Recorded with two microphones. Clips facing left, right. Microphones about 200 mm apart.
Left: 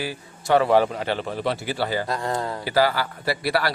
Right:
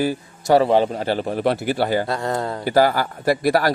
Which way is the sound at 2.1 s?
25° right (ahead or behind).